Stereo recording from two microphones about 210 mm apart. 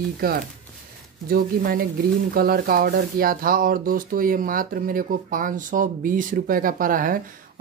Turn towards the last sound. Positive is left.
turn(degrees=-40)  # may be behind; listen again after turning